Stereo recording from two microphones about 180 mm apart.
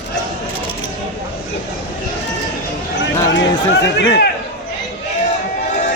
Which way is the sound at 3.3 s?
75° left (ahead or behind).